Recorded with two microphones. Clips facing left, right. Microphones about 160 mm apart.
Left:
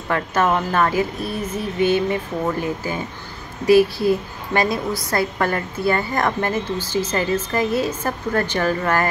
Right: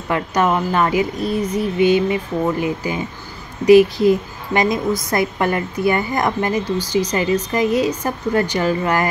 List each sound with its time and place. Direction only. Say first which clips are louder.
0.1 s a woman's voice: right 1 dB; 15° right (ahead or behind)